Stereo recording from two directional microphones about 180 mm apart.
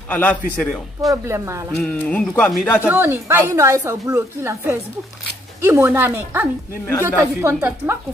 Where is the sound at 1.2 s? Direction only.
15° right (ahead or behind).